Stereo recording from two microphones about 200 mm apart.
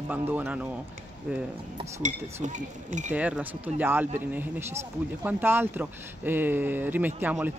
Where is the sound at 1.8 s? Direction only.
35° right (ahead or behind).